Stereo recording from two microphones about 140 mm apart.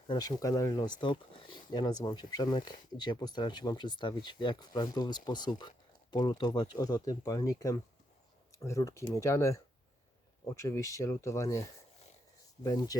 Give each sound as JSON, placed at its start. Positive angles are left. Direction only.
{"t": 0.1, "sound": "speech", "side_deg": 25}